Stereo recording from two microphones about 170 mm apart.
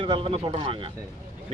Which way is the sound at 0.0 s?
30° right (ahead or behind).